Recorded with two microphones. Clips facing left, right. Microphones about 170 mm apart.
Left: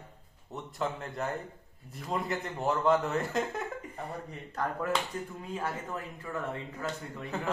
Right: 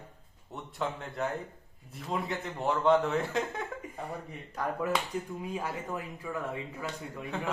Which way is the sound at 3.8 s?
10° right (ahead or behind).